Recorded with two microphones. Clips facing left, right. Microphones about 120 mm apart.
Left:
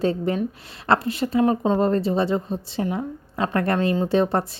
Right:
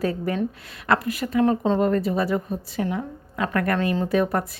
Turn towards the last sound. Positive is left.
turn(degrees=30)  # may be behind; listen again after turning